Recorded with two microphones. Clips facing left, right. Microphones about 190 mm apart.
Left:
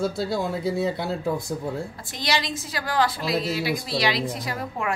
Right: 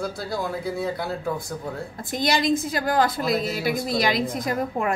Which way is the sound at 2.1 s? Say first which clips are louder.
Right 7 dB; 50° right (ahead or behind).